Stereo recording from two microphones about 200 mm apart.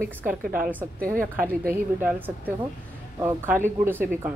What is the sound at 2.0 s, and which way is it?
Speech, 5° right (ahead or behind).